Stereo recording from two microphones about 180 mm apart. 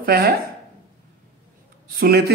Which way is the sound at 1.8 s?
55° right (ahead or behind).